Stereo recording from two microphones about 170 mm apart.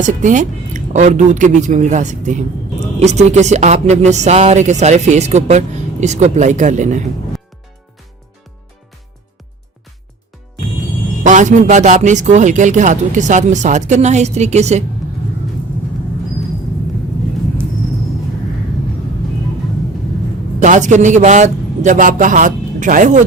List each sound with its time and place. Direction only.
0.0 s speech: 50° right (ahead or behind)
11.2 s speech: 45° right (ahead or behind)
20.6 s speech: 45° right (ahead or behind)